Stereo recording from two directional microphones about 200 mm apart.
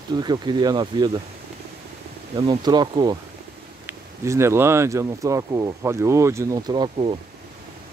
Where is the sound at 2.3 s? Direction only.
20° right (ahead or behind).